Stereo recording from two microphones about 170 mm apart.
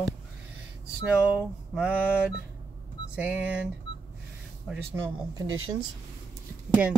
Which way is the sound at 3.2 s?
10° right (ahead or behind).